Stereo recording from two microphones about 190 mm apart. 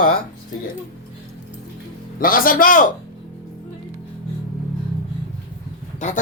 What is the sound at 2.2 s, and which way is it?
Speech, 50° left (ahead or behind).